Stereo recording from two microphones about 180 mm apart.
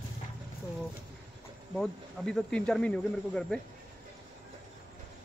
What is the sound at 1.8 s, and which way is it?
Speech, 5° left (ahead or behind).